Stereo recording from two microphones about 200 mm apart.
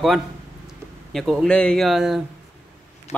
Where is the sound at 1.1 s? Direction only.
Centre (ahead or behind).